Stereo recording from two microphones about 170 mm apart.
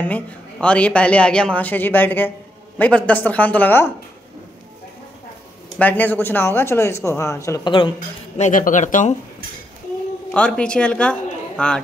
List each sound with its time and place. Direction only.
0.0 s a woman's voice: 10° left (ahead or behind)
5.8 s a woman's voice: 10° left (ahead or behind)
8.4 s speech: 50° left (ahead or behind)
10.3 s speech: 5° left (ahead or behind)